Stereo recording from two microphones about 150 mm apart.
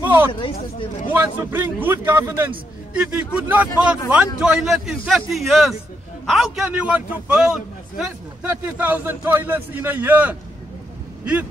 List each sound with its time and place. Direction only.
0.0 s a sound: 15° right (ahead or behind)
0.3 s speech: 35° left (ahead or behind)
1.1 s a man's voice: 15° right (ahead or behind)